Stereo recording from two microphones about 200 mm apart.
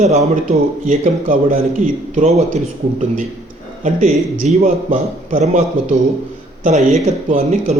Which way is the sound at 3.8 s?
40° right (ahead or behind).